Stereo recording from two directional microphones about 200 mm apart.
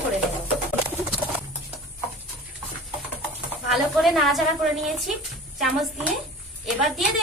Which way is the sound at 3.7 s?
Centre (ahead or behind).